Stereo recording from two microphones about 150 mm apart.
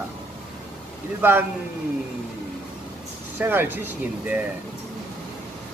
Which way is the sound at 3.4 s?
15° right (ahead or behind).